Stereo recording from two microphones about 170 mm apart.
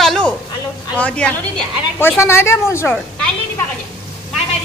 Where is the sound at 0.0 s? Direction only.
5° left (ahead or behind).